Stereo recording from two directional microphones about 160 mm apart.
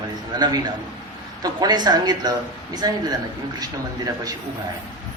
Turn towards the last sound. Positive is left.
turn(degrees=-25)  # may be behind; listen again after turning